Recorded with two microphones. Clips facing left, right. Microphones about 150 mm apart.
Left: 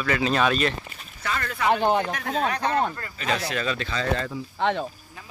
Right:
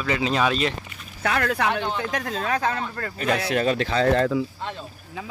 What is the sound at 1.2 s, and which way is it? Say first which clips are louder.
Speech: right 5 dB; 70° right (ahead or behind).